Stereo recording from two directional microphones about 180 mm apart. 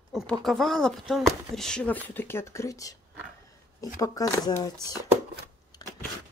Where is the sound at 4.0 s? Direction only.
20° left (ahead or behind).